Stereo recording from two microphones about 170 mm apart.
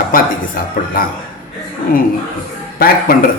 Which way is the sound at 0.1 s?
55° left (ahead or behind).